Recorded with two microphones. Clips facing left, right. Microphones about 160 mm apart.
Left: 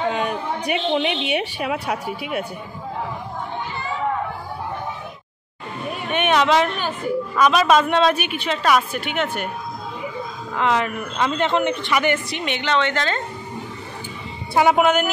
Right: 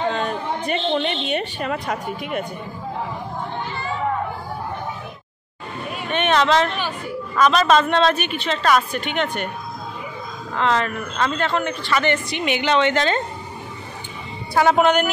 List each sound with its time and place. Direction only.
0.0 s a sound: 10° left (ahead or behind)
0.7 s a woman's voice: 10° left (ahead or behind)
6.0 s a woman's voice: 10° left (ahead or behind)
10.5 s a woman's voice: 10° left (ahead or behind)
12.3 s a woman's voice: 5° right (ahead or behind)
12.6 s speech: 15° right (ahead or behind)
14.5 s a woman's voice: 10° left (ahead or behind)